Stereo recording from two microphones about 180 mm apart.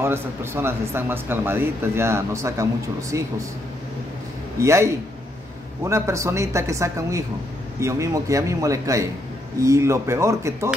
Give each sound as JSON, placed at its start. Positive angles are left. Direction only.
{"t": 0.0, "sound": "speech", "side_deg": -15}
{"t": 4.6, "sound": "speech", "side_deg": -15}